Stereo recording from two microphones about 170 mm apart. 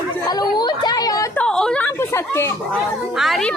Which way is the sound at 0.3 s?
25° left (ahead or behind).